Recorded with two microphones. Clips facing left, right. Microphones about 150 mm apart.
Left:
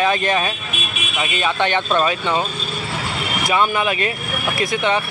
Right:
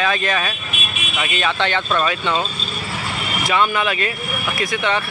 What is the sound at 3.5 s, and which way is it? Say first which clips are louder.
Speech: even; 15° left (ahead or behind).